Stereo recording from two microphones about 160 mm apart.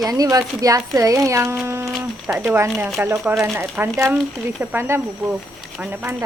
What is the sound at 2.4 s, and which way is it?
Speech, 15° right (ahead or behind).